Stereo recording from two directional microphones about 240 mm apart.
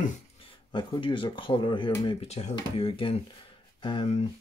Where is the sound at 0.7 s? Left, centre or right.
Centre.